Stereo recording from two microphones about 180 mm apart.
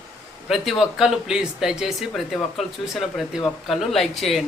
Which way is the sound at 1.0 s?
5° right (ahead or behind).